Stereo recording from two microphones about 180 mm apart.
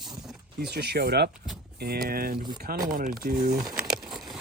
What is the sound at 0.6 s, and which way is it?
Speech, 60° right (ahead or behind).